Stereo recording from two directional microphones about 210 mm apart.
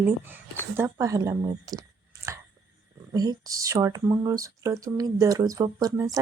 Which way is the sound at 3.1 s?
20° right (ahead or behind).